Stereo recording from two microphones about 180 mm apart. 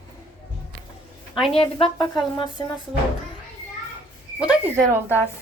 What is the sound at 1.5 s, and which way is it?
Speech, 30° left (ahead or behind).